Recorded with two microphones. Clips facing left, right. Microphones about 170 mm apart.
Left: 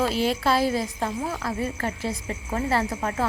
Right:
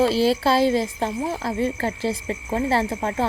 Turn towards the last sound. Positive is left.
turn(degrees=-30)  # may be behind; listen again after turning